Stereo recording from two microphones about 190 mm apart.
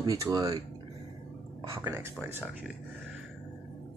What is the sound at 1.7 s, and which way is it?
Speech, 15° right (ahead or behind).